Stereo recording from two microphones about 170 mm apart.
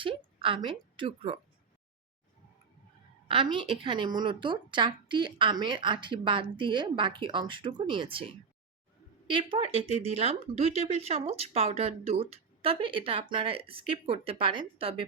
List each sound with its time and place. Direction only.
0.0 s a woman's voice: 30° right (ahead or behind)
3.2 s a woman's voice: 30° right (ahead or behind)